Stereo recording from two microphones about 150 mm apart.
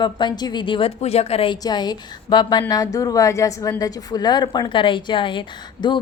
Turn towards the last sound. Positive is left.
turn(degrees=30)  # may be behind; listen again after turning